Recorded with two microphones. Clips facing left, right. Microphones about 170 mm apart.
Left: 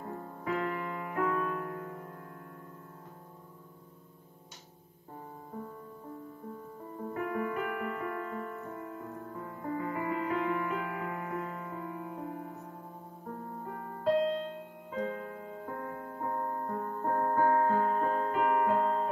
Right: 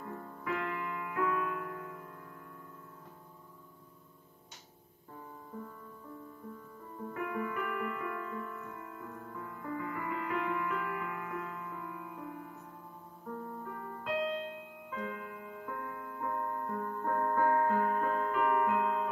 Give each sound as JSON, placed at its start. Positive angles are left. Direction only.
{"t": 0.0, "sound": "music", "side_deg": 35}
{"t": 7.2, "sound": "music", "side_deg": 35}
{"t": 13.7, "sound": "music", "side_deg": 40}